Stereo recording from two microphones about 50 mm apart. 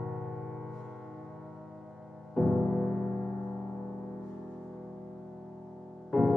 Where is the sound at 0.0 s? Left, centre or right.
Centre.